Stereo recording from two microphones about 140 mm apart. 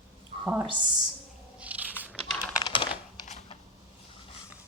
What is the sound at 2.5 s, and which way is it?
Typing, 35° left (ahead or behind).